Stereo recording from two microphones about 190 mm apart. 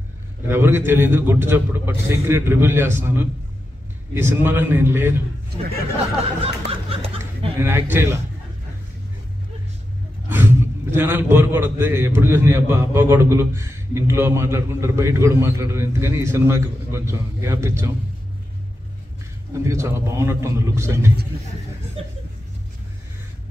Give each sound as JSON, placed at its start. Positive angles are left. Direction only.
{"t": 0.5, "sound": "a man's voice", "side_deg": -15}
{"t": 6.4, "sound": "speech", "side_deg": -30}
{"t": 7.6, "sound": "a man's voice", "side_deg": -10}
{"t": 10.3, "sound": "a man's voice", "side_deg": -10}
{"t": 19.6, "sound": "a man's voice", "side_deg": -15}